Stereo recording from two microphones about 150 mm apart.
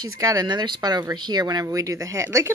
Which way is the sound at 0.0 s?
25° right (ahead or behind).